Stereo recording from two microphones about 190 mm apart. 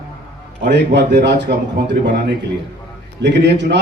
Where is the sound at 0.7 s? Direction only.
65° right (ahead or behind).